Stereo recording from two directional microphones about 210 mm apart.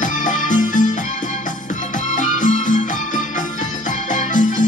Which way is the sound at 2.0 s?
40° left (ahead or behind).